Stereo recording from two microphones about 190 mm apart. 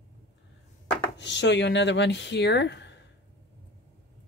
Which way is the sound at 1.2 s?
65° left (ahead or behind).